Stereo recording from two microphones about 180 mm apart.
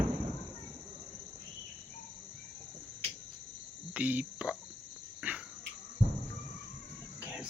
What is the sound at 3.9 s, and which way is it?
Speech, 10° right (ahead or behind).